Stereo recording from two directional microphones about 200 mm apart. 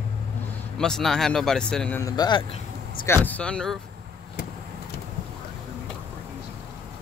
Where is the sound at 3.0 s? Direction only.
10° left (ahead or behind).